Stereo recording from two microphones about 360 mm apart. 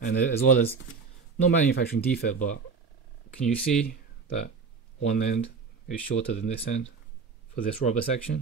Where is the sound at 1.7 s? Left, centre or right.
Left.